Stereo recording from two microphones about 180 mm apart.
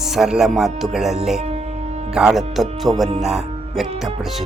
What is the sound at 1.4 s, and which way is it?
Music, 35° right (ahead or behind).